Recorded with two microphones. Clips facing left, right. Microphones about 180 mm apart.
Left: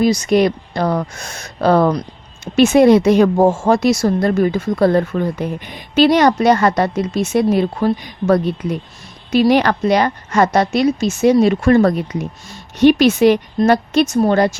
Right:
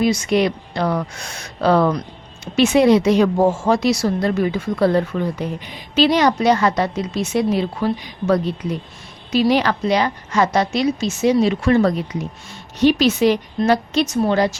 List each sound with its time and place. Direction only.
0.0 s a woman's voice: 40° left (ahead or behind)